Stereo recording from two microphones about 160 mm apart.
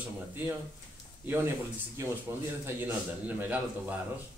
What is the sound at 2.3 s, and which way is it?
A man's voice, 20° right (ahead or behind).